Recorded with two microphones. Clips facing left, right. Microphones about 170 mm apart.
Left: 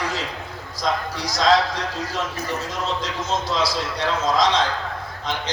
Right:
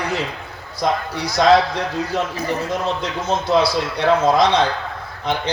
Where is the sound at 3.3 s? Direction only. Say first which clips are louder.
Right 7 dB; 60° right (ahead or behind).